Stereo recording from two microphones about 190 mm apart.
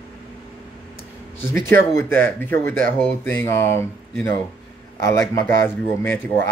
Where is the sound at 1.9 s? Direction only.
10° left (ahead or behind).